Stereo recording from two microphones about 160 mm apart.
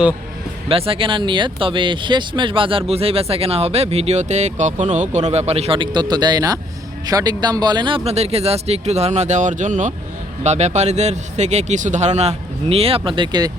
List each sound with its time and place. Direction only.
0.7 s a man's voice: 35° right (ahead or behind)